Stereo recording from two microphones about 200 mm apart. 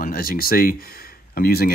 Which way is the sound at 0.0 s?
45° left (ahead or behind).